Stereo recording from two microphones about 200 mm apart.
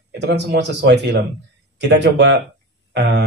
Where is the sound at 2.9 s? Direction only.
60° right (ahead or behind).